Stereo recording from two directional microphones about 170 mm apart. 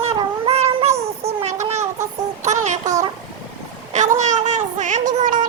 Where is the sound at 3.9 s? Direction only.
45° right (ahead or behind).